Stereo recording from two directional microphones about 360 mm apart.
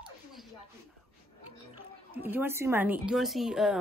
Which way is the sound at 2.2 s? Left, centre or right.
Centre.